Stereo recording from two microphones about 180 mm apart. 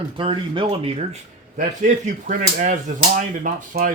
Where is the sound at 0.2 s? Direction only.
30° right (ahead or behind).